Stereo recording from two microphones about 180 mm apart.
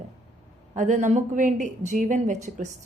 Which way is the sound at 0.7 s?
45° right (ahead or behind).